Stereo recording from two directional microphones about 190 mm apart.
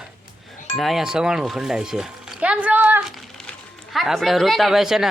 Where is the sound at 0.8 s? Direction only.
Centre (ahead or behind).